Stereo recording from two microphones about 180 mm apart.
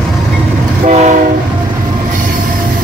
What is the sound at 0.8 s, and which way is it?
Train, 40° right (ahead or behind).